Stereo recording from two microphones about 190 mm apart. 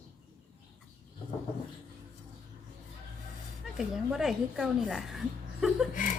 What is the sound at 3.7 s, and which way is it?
Speech, centre (ahead or behind).